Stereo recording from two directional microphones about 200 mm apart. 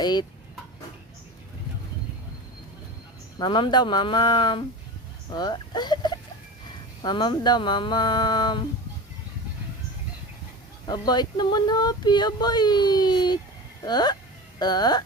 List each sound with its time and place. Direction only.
0.0 s speech: 20° left (ahead or behind)
3.3 s speech: 25° left (ahead or behind)
10.8 s speech: 20° left (ahead or behind)